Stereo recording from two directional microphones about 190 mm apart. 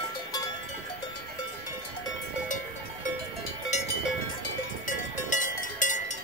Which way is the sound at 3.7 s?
35° left (ahead or behind).